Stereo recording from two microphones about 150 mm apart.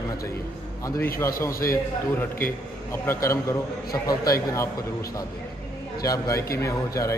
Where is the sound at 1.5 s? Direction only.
70° left (ahead or behind).